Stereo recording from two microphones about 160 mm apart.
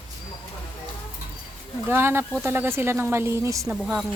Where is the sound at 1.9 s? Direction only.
15° right (ahead or behind).